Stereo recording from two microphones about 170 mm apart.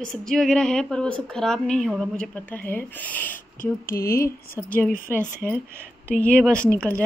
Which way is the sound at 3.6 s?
60° left (ahead or behind).